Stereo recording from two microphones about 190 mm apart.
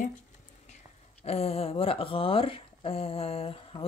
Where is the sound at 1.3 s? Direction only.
30° left (ahead or behind).